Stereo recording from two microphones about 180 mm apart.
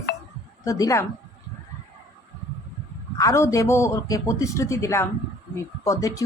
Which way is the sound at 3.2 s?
15° left (ahead or behind).